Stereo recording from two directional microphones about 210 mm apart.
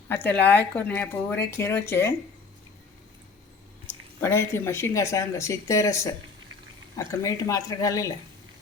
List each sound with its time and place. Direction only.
0.1 s speech: 10° left (ahead or behind)
4.2 s speech: 10° left (ahead or behind)